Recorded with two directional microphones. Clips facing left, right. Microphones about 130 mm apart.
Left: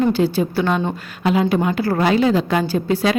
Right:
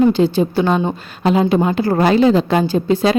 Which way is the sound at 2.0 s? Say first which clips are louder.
Right 4 dB; 35° right (ahead or behind).